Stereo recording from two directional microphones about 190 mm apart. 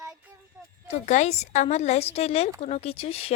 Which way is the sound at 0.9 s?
35° left (ahead or behind).